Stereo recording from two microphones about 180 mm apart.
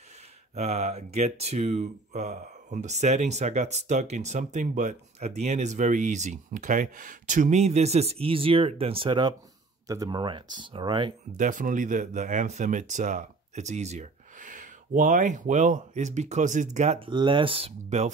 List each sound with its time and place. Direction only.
0.6 s speech: 35° right (ahead or behind)
11.3 s speech: 45° right (ahead or behind)